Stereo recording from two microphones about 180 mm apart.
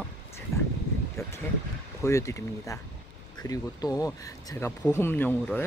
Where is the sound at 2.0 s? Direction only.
15° left (ahead or behind).